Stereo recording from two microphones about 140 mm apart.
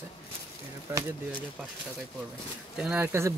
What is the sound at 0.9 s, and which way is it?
Speech, 15° right (ahead or behind).